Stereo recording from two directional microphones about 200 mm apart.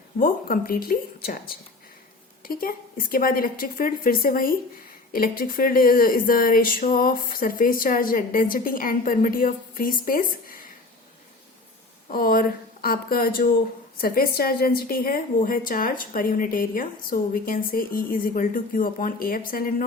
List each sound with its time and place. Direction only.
0.2 s a woman's voice: 45° left (ahead or behind)
12.1 s a woman's voice: 45° left (ahead or behind)